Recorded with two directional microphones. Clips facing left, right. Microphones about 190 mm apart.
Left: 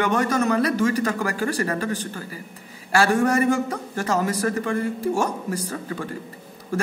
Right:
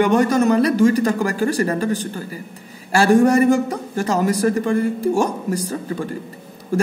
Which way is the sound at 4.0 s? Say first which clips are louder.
Right 5 dB; 30° right (ahead or behind).